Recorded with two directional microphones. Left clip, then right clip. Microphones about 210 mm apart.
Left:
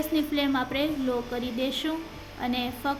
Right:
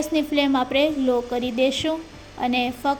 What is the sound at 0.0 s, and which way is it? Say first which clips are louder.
A woman's voice: right 5 dB; 25° right (ahead or behind).